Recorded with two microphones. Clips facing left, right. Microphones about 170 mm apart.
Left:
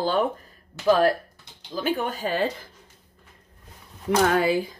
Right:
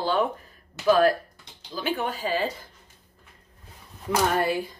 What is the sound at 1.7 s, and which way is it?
Speech, 45° left (ahead or behind).